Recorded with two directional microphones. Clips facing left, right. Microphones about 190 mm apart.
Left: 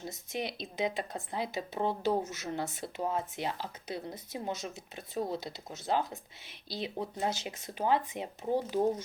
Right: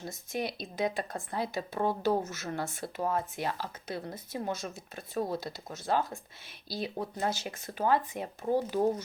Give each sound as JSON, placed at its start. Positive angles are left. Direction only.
{"t": 0.0, "sound": "a woman's voice", "side_deg": 20}